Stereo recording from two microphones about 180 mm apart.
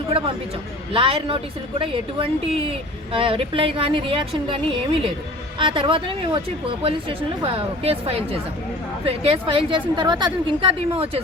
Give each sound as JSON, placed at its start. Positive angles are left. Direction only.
{"t": 0.9, "sound": "a woman's voice", "side_deg": -30}